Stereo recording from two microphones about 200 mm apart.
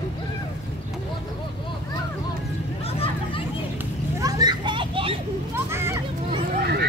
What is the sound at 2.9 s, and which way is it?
Vehicle, 30° left (ahead or behind).